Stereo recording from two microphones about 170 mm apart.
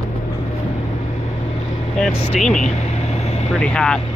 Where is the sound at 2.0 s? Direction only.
5° left (ahead or behind).